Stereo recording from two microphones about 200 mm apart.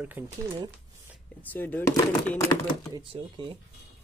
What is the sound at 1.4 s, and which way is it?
Speech, 10° left (ahead or behind).